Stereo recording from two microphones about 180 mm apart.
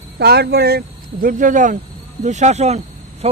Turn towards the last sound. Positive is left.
turn(degrees=-35)  # may be behind; listen again after turning